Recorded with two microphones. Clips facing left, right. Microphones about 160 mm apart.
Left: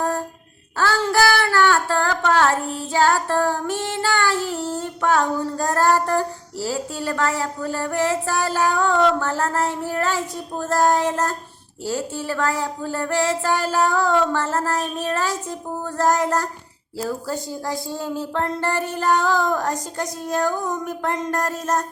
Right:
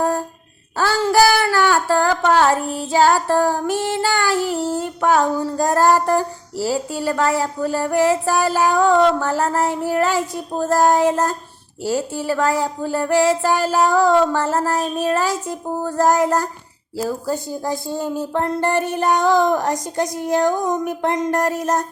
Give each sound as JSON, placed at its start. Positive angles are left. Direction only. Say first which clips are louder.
{"t": 0.8, "sound": "child singing", "louder": "right 4 dB", "side_deg": -10}